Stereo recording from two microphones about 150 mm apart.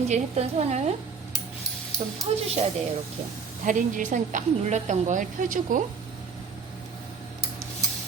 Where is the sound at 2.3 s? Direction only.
40° right (ahead or behind).